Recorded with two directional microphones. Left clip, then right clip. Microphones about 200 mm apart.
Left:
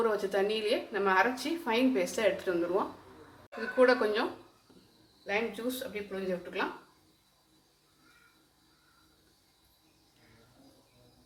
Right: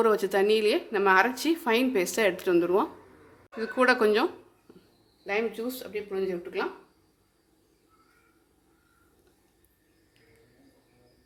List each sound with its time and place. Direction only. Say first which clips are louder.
0.0 s speech: right 6 dB; 60° right (ahead or behind)
5.2 s speech: right 3 dB; 45° right (ahead or behind)